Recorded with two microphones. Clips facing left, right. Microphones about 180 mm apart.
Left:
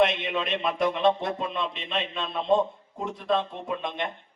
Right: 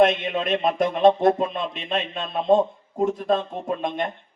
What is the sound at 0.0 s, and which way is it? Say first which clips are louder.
Speech: right 5 dB; 50° right (ahead or behind).